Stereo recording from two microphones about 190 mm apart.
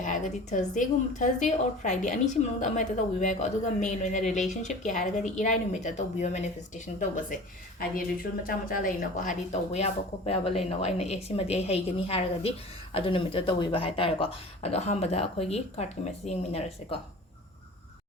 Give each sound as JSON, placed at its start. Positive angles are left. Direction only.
{"t": 0.0, "sound": "speech", "side_deg": 40}
{"t": 8.4, "sound": "speech", "side_deg": 50}